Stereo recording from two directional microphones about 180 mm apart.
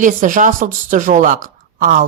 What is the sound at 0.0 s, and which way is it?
Speech, 45° right (ahead or behind).